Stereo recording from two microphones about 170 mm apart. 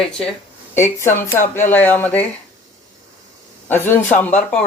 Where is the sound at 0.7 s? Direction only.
15° left (ahead or behind).